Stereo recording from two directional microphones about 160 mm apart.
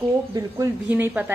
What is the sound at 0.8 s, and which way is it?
Speech, 10° right (ahead or behind).